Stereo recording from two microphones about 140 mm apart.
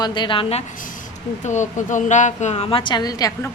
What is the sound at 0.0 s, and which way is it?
Speech, 35° left (ahead or behind).